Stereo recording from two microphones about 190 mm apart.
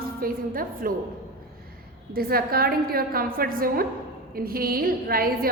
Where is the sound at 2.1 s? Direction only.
50° right (ahead or behind).